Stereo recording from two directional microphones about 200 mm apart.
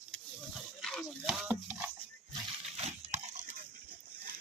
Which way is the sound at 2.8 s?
35° right (ahead or behind).